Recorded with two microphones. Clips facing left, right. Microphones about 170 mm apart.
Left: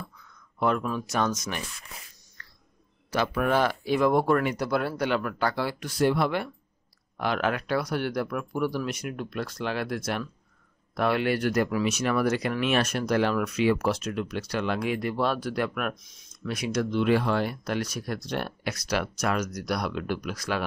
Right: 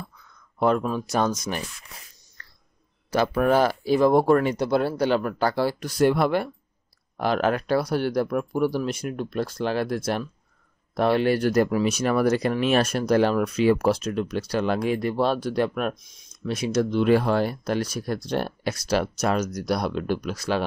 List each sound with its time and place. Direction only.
0.6 s speech: 35° right (ahead or behind)
3.1 s speech: 35° right (ahead or behind)